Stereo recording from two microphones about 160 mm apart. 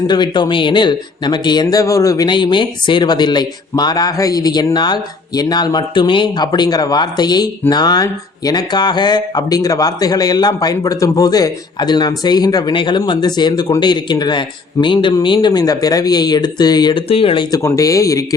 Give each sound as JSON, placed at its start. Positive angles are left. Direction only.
{"t": 0.1, "sound": "speech", "side_deg": 30}
{"t": 17.5, "sound": "speech", "side_deg": 20}